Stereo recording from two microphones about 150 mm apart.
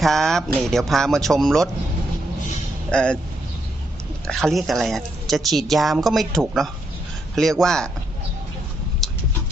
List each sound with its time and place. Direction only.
0.0 s a woman's voice: centre (ahead or behind)
2.9 s speech: 5° left (ahead or behind)
4.3 s a woman's voice: centre (ahead or behind)
9.0 s a sound: centre (ahead or behind)